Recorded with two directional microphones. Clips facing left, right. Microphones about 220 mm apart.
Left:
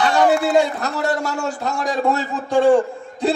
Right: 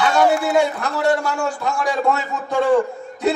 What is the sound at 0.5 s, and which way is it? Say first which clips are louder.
Speech: left 1 dB; 40° left (ahead or behind).